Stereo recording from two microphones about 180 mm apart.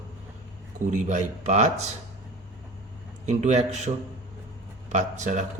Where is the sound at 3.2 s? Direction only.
40° right (ahead or behind).